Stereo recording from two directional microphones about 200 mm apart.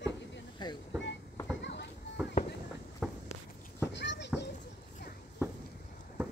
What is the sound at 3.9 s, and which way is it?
Children playing, 60° left (ahead or behind).